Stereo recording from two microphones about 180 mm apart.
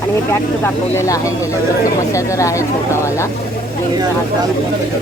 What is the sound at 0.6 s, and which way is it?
Speech, 15° left (ahead or behind).